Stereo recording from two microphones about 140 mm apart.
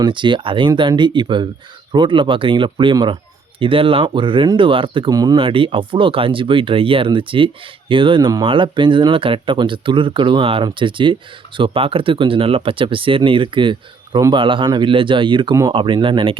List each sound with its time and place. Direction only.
0.0 s speech: 35° right (ahead or behind)
5.4 s speech: 40° right (ahead or behind)